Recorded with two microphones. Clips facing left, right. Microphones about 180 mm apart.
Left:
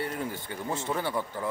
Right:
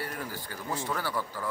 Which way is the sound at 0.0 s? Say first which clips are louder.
Left 4 dB; 25° left (ahead or behind).